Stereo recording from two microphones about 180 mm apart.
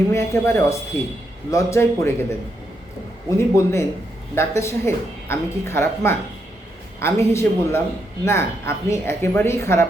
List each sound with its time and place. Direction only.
0.1 s speech: 15° left (ahead or behind)
3.2 s speech: 15° left (ahead or behind)